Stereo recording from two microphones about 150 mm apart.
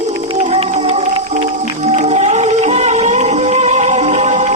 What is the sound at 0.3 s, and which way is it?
Music, 50° right (ahead or behind).